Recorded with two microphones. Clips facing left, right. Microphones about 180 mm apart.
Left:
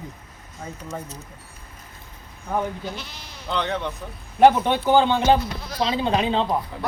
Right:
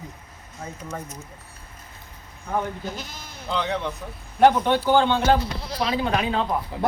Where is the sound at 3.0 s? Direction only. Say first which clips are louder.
Right 1 dB; 45° right (ahead or behind).